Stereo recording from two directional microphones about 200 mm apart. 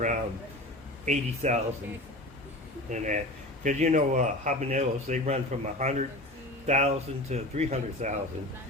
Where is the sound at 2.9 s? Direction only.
40° right (ahead or behind).